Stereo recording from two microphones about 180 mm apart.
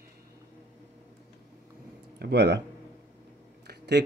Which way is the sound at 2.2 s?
65° right (ahead or behind).